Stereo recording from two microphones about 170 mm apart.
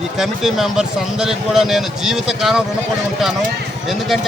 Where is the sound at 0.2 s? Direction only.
Centre (ahead or behind).